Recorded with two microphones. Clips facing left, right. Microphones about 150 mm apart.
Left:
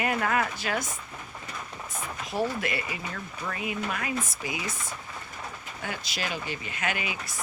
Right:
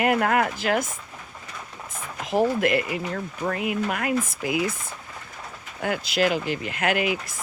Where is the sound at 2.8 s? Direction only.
60° right (ahead or behind).